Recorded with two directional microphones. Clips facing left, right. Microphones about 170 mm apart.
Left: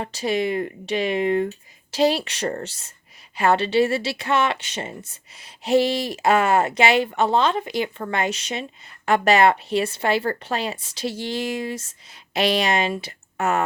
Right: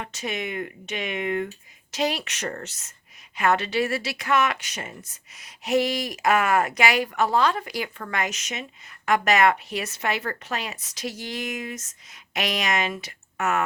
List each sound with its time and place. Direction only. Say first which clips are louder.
0.0 s speech: left 8 dB; 35° left (ahead or behind)